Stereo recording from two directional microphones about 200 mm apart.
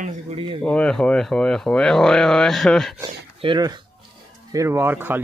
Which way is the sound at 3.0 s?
25° right (ahead or behind).